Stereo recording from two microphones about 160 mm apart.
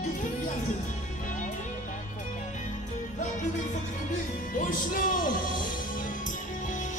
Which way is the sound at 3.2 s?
50° left (ahead or behind).